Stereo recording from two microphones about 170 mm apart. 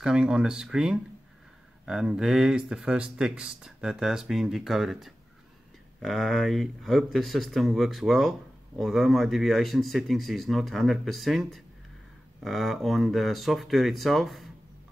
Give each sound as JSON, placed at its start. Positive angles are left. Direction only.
{"t": 0.0, "sound": "speech", "side_deg": -5}